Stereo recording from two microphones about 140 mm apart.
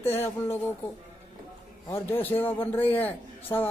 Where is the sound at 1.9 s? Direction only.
15° left (ahead or behind).